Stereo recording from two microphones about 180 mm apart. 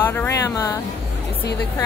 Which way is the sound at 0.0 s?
10° left (ahead or behind).